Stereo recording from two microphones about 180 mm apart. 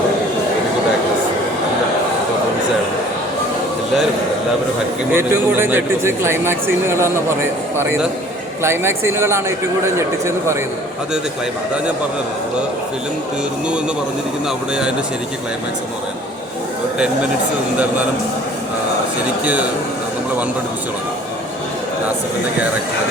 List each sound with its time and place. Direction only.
5.1 s speech: 15° right (ahead or behind)
8.6 s speech: 15° right (ahead or behind)